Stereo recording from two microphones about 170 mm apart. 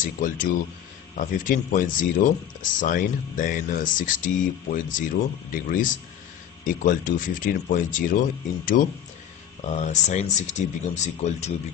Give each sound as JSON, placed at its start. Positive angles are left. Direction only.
{"t": 0.0, "sound": "speech", "side_deg": 50}
{"t": 9.7, "sound": "speech", "side_deg": 40}